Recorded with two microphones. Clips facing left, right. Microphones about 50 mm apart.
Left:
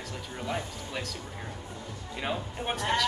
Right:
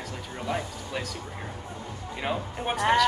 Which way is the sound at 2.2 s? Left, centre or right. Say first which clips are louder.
Right 3 dB; centre.